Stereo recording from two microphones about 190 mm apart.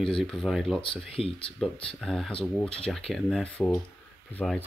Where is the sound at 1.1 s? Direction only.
30° left (ahead or behind).